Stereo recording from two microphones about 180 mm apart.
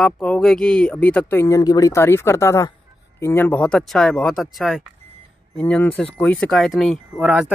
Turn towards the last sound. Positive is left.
turn(degrees=-5)  # may be behind; listen again after turning